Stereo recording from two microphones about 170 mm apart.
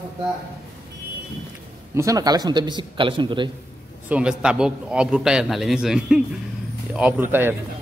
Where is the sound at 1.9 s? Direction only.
20° right (ahead or behind).